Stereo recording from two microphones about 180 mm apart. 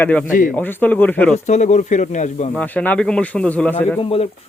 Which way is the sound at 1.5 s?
40° left (ahead or behind).